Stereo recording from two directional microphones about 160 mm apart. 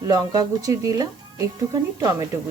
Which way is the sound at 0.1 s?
20° right (ahead or behind).